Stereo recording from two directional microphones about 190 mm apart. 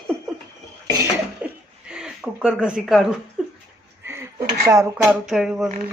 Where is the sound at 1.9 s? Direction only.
5° right (ahead or behind).